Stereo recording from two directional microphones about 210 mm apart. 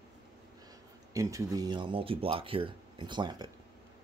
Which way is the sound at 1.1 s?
15° right (ahead or behind).